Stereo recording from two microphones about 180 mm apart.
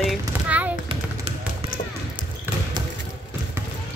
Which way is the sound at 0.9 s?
30° right (ahead or behind).